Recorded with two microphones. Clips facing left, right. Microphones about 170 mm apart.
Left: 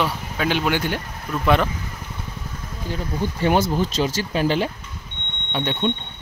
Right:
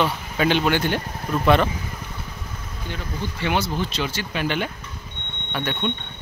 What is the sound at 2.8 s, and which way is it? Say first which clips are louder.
Speech: left 5 dB; 40° left (ahead or behind).